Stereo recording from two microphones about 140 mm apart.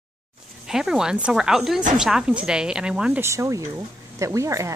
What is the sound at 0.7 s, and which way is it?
Speech, 5° right (ahead or behind).